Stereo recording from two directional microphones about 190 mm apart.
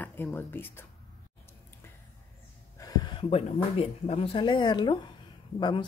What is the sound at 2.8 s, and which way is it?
Speech, 20° left (ahead or behind).